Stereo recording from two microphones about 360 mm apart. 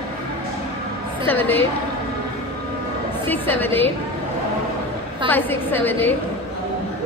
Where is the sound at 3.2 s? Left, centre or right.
Centre.